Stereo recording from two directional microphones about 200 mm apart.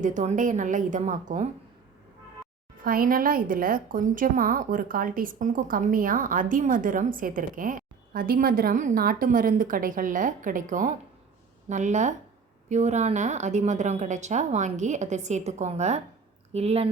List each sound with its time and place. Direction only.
0.0 s a woman's voice: 40° right (ahead or behind)
2.8 s a woman's voice: 45° right (ahead or behind)